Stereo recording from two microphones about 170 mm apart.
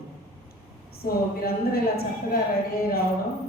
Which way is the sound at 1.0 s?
60° left (ahead or behind).